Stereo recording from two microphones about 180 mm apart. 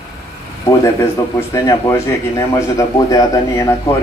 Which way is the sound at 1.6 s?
15° left (ahead or behind).